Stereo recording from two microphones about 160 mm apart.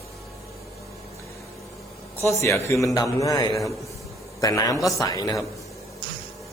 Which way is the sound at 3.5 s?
Centre (ahead or behind).